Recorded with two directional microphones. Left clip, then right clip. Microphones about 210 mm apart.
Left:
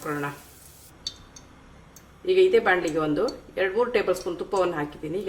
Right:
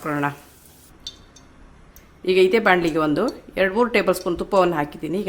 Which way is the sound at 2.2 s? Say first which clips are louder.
Right 3 dB; 55° right (ahead or behind).